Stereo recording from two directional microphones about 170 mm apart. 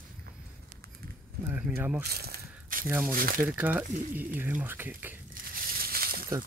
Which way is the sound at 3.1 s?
55° right (ahead or behind).